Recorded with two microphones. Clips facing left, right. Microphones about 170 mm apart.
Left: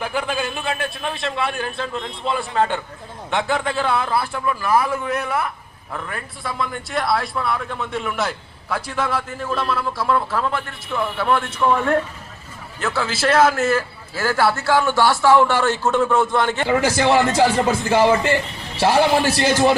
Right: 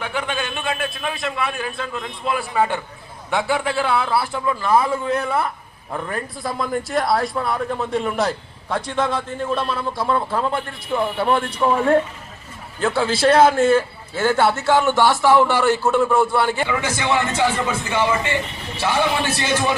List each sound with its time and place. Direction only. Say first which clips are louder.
0.0 s a man's voice: left 2 dB; 5° left (ahead or behind)
4.2 s a man's voice: right 1 dB; 20° right (ahead or behind)
6.1 s a man's voice: right 5 dB; 40° right (ahead or behind)
7.3 s a man's voice: right 2 dB; 25° right (ahead or behind)
7.8 s a man's voice: right 3 dB; 35° right (ahead or behind); by 16.6 s 10° right (ahead or behind)
16.6 s a man's voice: left 5 dB; 35° left (ahead or behind)